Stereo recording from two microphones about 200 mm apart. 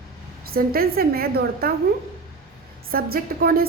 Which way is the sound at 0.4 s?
50° right (ahead or behind).